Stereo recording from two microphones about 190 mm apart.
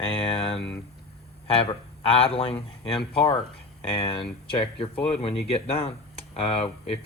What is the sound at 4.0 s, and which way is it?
Speech, 25° left (ahead or behind).